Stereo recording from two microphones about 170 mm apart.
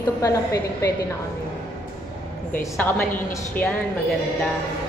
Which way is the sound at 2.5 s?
10° left (ahead or behind).